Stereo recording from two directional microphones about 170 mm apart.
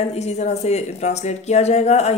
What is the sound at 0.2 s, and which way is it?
Speech, 40° left (ahead or behind).